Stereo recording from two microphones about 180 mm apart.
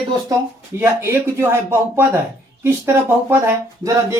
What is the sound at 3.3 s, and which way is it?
Speech, 15° right (ahead or behind).